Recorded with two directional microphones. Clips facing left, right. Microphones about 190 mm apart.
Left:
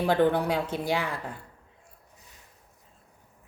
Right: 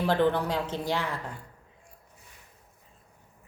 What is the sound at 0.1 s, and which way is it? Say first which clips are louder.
Speech: left 2 dB; 10° left (ahead or behind).